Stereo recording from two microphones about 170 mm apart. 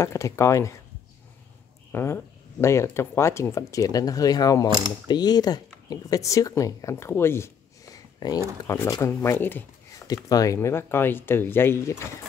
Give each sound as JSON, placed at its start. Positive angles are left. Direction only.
{"t": 0.0, "sound": "speech", "side_deg": 15}
{"t": 1.9, "sound": "speech", "side_deg": 15}